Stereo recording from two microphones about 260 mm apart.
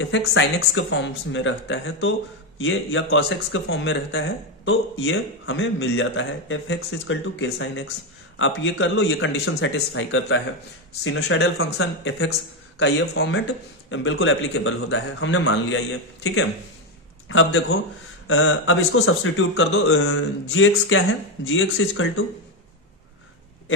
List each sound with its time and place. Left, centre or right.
0.0 s speech: left